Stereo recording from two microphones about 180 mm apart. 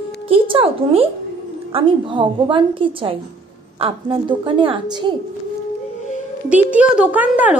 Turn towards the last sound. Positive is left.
turn(degrees=-10)  # may be behind; listen again after turning